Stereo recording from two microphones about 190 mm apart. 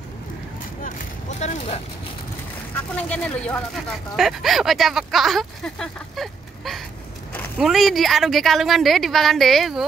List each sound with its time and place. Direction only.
1.4 s speech: 35° left (ahead or behind)
2.7 s speech: 5° left (ahead or behind)